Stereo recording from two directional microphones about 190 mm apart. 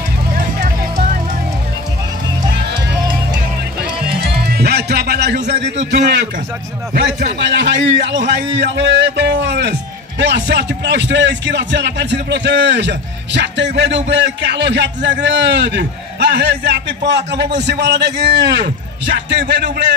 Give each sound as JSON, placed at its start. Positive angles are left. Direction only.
{"t": 4.1, "sound": "music", "side_deg": -55}
{"t": 7.3, "sound": "a man's voice", "side_deg": -70}